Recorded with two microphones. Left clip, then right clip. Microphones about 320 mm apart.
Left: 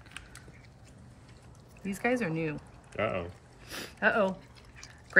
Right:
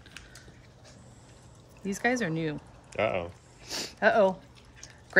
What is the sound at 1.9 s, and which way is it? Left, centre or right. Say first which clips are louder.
Speech: right 2 dB; centre.